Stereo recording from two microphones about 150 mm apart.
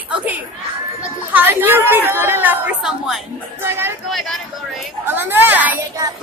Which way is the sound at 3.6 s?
15° right (ahead or behind).